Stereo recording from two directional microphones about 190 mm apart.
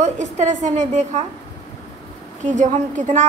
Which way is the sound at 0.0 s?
40° right (ahead or behind).